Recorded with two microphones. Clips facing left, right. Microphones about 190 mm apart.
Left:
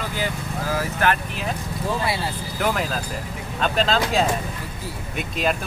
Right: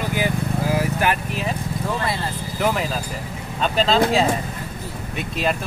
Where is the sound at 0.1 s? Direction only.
15° right (ahead or behind).